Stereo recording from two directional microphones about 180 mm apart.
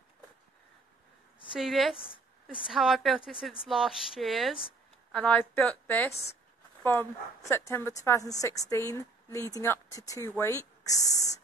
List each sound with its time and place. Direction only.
1.5 s speech: centre (ahead or behind)
2.0 s a woman's voice: 30° left (ahead or behind)
2.4 s a woman's voice: centre (ahead or behind); by 10.6 s 15° left (ahead or behind)
10.9 s beatboxing: 20° left (ahead or behind)